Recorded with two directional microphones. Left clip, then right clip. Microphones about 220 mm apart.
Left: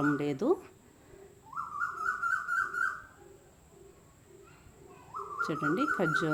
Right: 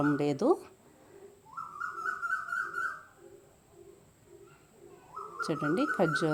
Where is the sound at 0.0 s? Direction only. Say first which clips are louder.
Right 2 dB; 15° right (ahead or behind).